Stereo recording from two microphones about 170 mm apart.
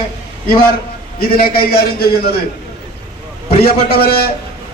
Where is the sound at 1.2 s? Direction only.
60° left (ahead or behind).